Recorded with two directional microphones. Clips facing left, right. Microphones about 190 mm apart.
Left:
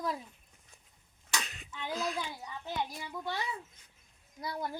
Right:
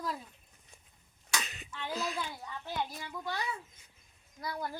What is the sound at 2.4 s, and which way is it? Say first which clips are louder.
Speech: even; 15° left (ahead or behind).